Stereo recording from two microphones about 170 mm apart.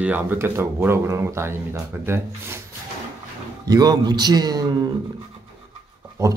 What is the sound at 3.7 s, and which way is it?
Speech, 25° right (ahead or behind).